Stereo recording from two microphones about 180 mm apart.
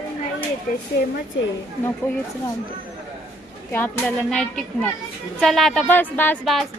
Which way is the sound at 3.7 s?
5° left (ahead or behind).